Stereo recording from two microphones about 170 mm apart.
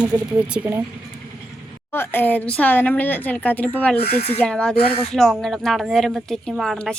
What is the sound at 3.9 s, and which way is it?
Speech, 35° left (ahead or behind).